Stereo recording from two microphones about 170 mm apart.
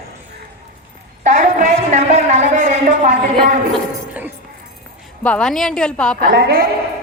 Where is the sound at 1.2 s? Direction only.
45° right (ahead or behind).